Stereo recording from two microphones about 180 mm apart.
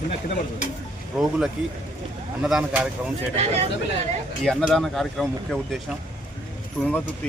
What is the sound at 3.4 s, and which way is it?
Speech, 35° right (ahead or behind).